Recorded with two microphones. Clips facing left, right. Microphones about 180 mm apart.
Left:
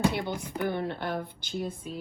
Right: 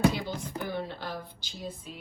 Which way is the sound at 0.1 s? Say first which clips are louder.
Left 2 dB; 60° left (ahead or behind).